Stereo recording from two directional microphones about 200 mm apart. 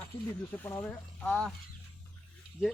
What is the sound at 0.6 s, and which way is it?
Speech, 10° left (ahead or behind).